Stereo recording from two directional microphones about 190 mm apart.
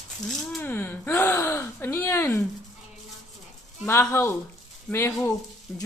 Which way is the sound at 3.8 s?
15° left (ahead or behind).